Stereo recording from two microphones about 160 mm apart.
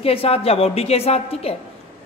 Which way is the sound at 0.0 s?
35° left (ahead or behind).